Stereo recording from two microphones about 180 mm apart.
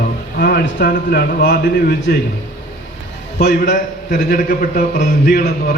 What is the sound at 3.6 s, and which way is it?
A man's voice, 50° left (ahead or behind).